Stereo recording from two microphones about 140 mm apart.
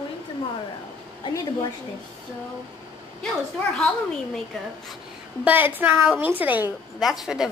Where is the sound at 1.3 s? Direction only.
25° left (ahead or behind).